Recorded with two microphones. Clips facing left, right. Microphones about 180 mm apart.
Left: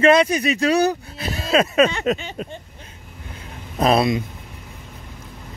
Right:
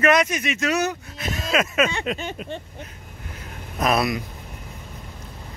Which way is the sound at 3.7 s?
30° left (ahead or behind).